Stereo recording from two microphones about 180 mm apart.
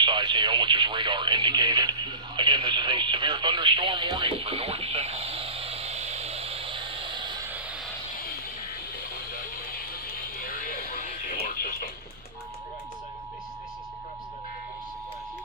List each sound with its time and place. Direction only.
0.0 s speech: 25° right (ahead or behind)
10.4 s music: 50° left (ahead or behind)